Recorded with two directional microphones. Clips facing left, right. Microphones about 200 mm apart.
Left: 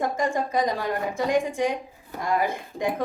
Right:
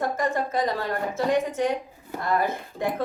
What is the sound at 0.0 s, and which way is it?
A woman's voice, 15° left (ahead or behind).